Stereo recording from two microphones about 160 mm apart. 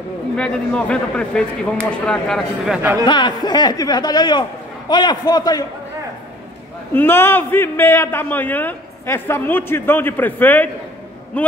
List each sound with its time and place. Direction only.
0.4 s a man's voice: 5° left (ahead or behind)
3.1 s speech: 30° left (ahead or behind)
6.9 s a man's voice: 15° left (ahead or behind)